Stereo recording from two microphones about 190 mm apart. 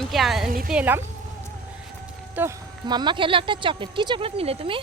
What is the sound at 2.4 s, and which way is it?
Speech, 10° right (ahead or behind).